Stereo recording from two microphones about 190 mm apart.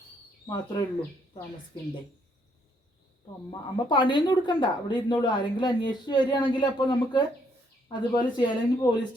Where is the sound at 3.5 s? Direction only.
25° left (ahead or behind).